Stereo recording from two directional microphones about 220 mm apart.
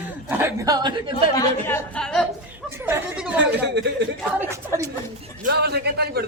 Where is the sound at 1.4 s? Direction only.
5° left (ahead or behind).